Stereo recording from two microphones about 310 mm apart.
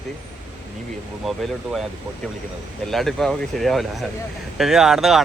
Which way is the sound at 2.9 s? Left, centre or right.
Centre.